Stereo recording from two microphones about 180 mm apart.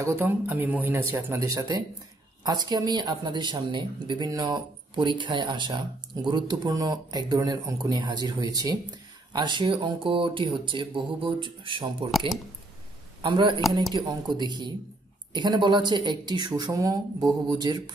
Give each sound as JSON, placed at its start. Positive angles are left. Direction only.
{"t": 0.0, "sound": "speech", "side_deg": -15}
{"t": 13.2, "sound": "speech", "side_deg": -25}